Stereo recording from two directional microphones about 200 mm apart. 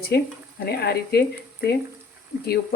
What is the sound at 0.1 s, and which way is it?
A woman's voice, 50° left (ahead or behind).